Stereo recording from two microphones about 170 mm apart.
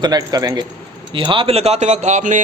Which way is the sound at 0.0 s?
20° right (ahead or behind).